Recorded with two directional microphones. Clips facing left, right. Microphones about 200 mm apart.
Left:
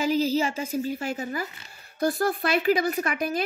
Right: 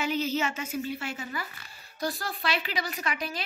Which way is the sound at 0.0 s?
35° left (ahead or behind).